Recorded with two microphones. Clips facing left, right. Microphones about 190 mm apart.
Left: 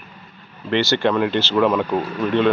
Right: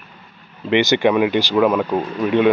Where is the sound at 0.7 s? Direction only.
15° right (ahead or behind).